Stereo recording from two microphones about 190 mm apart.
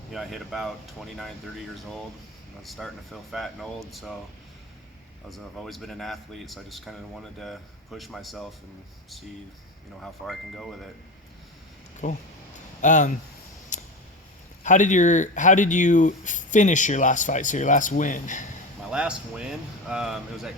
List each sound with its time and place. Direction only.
0.1 s speech: centre (ahead or behind)
5.3 s speech: centre (ahead or behind)
10.0 s speech: centre (ahead or behind)
12.0 s speech: 40° left (ahead or behind)
13.7 s a sound: 40° left (ahead or behind)
14.6 s speech: 40° left (ahead or behind)
18.9 s speech: 5° right (ahead or behind)